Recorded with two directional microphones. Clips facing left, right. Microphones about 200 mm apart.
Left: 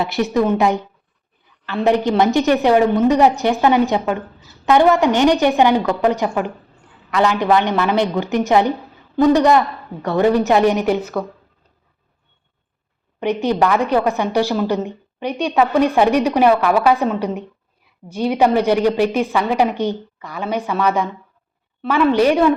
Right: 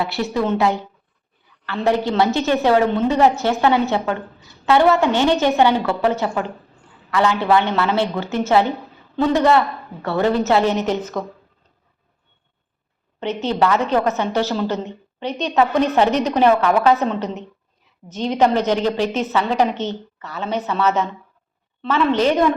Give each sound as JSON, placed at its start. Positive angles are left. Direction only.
{"t": 0.0, "sound": "a woman's voice", "side_deg": 20}
{"t": 13.1, "sound": "a woman's voice", "side_deg": 15}